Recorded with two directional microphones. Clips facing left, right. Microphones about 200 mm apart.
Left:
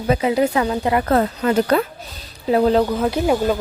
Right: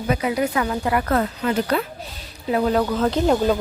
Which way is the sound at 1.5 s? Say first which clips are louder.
Left 5 dB; 45° left (ahead or behind).